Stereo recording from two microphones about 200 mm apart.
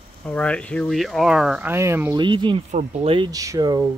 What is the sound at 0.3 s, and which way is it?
Speech, 5° left (ahead or behind).